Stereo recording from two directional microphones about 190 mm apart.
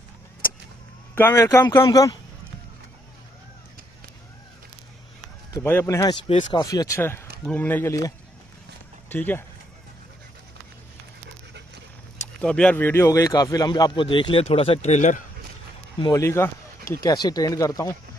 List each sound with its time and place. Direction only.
1.1 s speech: 10° left (ahead or behind)
5.5 s speech: 10° left (ahead or behind)
6.2 s a man's voice: 25° left (ahead or behind)
9.1 s speech: 10° left (ahead or behind)
12.4 s a man's voice: 5° left (ahead or behind); by 15.2 s 40° left (ahead or behind)
16.0 s speech: 15° left (ahead or behind)